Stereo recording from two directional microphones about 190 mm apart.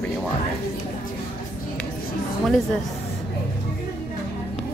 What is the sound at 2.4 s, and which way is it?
Speech, 5° left (ahead or behind).